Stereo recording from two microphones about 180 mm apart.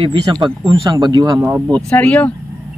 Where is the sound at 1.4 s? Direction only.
10° right (ahead or behind).